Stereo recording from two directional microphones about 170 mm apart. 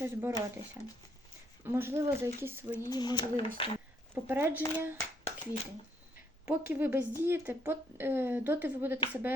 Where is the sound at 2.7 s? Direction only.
25° left (ahead or behind).